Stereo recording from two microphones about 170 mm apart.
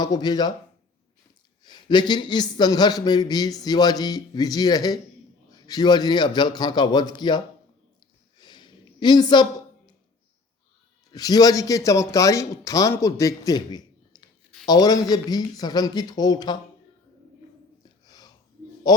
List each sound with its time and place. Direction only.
0.0 s a man's voice: 25° left (ahead or behind)
1.6 s a man's voice: 25° left (ahead or behind)
8.4 s a sound: 25° left (ahead or behind)
11.1 s a man's voice: 20° left (ahead or behind)
17.8 s a sound: 25° left (ahead or behind)
18.9 s a man's voice: 25° left (ahead or behind)